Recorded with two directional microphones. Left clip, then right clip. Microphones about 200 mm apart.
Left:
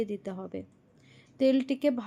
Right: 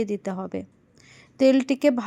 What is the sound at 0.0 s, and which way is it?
A woman's voice, 15° right (ahead or behind).